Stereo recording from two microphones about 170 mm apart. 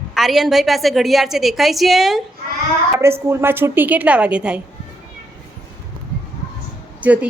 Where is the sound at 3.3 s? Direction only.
15° right (ahead or behind).